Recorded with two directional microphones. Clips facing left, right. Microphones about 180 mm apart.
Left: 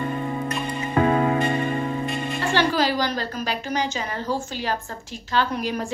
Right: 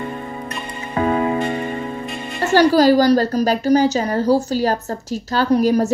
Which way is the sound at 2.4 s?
40° right (ahead or behind).